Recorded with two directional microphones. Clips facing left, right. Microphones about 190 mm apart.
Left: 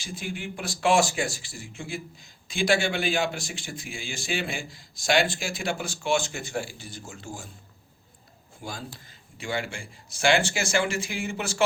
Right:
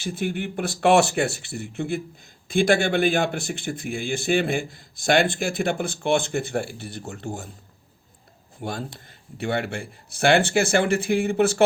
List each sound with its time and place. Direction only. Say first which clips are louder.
0.0 s speech: right 8 dB; 60° right (ahead or behind)
8.6 s speech: right 7 dB; 60° right (ahead or behind)